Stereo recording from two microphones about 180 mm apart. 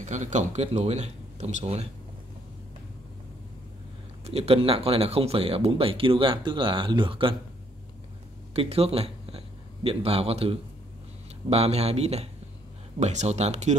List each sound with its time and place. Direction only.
0.0 s speech: 40° right (ahead or behind)
4.3 s speech: 35° right (ahead or behind)
8.5 s speech: 35° right (ahead or behind)